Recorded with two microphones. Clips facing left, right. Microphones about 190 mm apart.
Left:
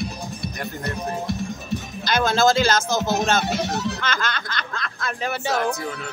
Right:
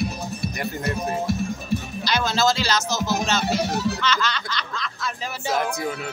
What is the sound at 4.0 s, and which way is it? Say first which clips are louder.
Snicker: right 2 dB; 50° left (ahead or behind).